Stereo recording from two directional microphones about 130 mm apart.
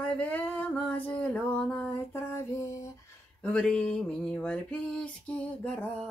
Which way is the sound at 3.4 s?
5° left (ahead or behind).